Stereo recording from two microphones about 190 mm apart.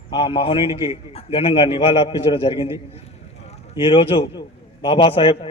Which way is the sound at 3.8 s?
30° left (ahead or behind).